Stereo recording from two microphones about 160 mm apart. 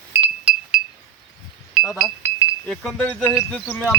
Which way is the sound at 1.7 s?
5° right (ahead or behind).